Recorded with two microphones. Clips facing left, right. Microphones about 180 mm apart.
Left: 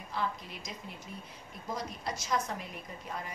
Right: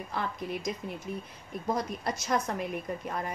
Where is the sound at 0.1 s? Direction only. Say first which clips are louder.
Even; 55° right (ahead or behind).